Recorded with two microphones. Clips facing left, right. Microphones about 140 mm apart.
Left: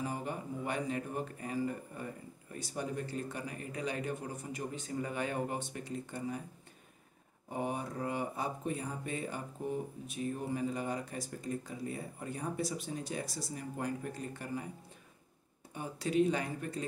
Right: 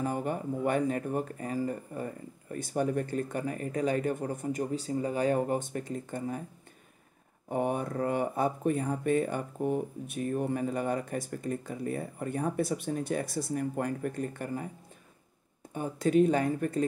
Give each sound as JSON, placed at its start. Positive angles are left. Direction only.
{"t": 0.0, "sound": "speech", "side_deg": -55}
{"t": 7.4, "sound": "speech", "side_deg": -55}
{"t": 15.7, "sound": "speech", "side_deg": -50}